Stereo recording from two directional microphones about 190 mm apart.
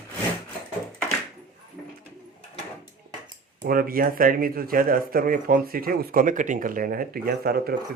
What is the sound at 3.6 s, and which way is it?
Speech, 50° right (ahead or behind).